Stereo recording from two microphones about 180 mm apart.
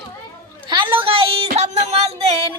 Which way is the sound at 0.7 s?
25° right (ahead or behind).